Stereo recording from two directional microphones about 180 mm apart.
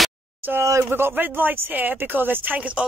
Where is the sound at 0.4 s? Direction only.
10° right (ahead or behind).